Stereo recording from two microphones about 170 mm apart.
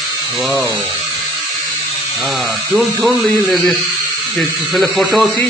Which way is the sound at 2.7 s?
Centre (ahead or behind).